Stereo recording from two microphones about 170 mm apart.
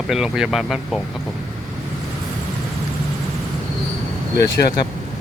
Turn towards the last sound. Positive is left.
turn(degrees=75)  # may be behind; listen again after turning